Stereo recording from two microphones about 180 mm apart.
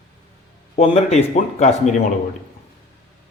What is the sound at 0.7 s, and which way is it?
Speech, 35° left (ahead or behind).